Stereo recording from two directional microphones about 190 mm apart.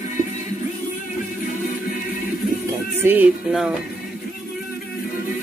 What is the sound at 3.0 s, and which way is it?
Music, 10° right (ahead or behind).